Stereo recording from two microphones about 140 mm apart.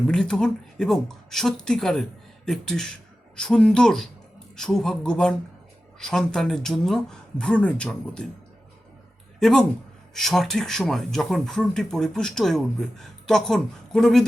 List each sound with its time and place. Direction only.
0.1 s speech: 5° left (ahead or behind)
9.4 s speech: 5° left (ahead or behind)